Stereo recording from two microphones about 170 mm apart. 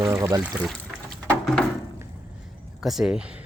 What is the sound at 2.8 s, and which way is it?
Speech, centre (ahead or behind).